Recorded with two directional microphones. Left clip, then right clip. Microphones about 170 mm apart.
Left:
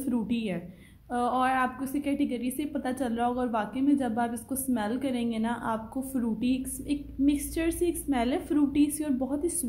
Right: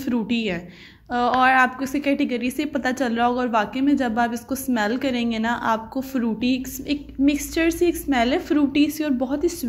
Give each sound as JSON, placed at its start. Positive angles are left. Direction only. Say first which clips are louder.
{"t": 0.0, "sound": "a woman's voice", "louder": "right 7 dB", "side_deg": -15}